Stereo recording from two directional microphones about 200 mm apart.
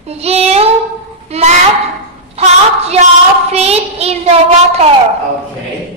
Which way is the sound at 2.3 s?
30° right (ahead or behind).